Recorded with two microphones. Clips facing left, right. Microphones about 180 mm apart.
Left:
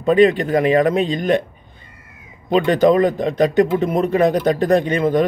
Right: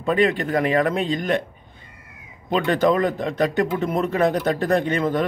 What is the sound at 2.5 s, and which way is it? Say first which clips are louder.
Speech: left 5 dB; 15° left (ahead or behind).